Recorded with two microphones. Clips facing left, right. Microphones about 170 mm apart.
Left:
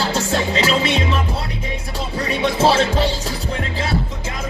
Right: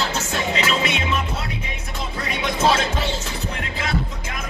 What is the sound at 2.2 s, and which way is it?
Music, 30° left (ahead or behind).